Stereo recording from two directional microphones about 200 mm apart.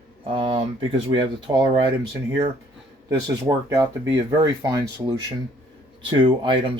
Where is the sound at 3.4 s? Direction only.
15° right (ahead or behind).